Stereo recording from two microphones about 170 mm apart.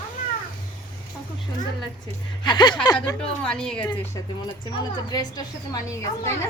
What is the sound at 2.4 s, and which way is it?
Speech, 25° left (ahead or behind).